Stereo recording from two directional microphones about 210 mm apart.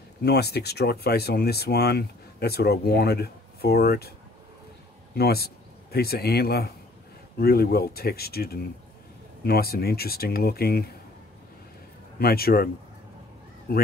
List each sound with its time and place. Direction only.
0.2 s speech: 50° left (ahead or behind)
5.1 s a man's voice: 50° left (ahead or behind)
12.2 s speech: 45° left (ahead or behind)
13.7 s speech: 50° left (ahead or behind)